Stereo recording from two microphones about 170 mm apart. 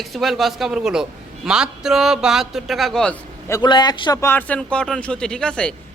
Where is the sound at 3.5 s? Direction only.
20° left (ahead or behind).